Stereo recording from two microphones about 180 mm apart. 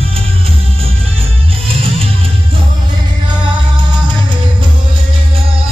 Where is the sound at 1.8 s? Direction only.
30° right (ahead or behind).